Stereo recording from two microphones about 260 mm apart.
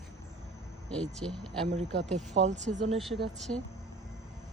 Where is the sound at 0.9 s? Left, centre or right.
Centre.